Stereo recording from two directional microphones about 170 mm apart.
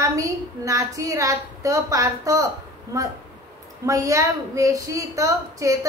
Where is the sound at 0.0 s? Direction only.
20° right (ahead or behind).